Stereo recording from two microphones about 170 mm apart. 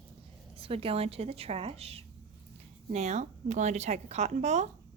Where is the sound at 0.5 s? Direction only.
35° right (ahead or behind).